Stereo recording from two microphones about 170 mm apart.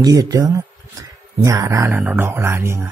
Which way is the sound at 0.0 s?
20° right (ahead or behind).